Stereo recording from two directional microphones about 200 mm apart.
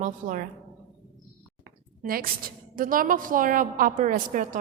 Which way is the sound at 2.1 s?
45° right (ahead or behind).